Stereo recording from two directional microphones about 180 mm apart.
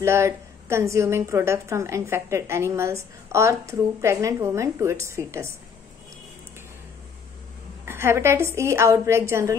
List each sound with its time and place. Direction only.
0.0 s a woman's voice: 15° right (ahead or behind)
7.8 s a woman's voice: 15° right (ahead or behind)